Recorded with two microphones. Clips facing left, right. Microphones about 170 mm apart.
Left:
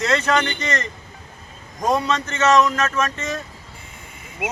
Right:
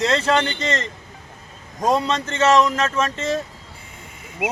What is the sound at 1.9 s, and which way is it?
A man's voice, 30° right (ahead or behind).